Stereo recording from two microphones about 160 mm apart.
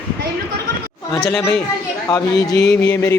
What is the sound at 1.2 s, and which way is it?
Speech, 5° left (ahead or behind).